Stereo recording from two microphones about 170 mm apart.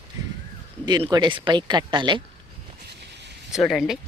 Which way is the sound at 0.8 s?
25° right (ahead or behind).